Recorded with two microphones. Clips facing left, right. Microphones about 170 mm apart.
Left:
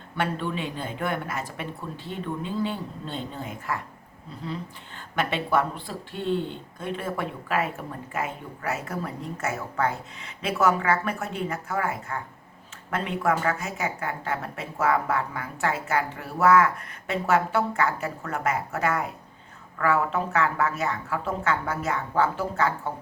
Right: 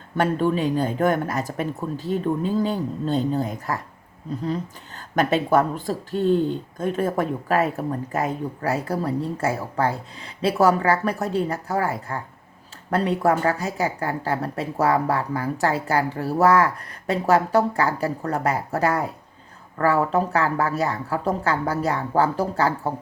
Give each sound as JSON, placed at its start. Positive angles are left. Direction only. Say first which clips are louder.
{"t": 0.2, "sound": "speech", "louder": "right 7 dB", "side_deg": -40}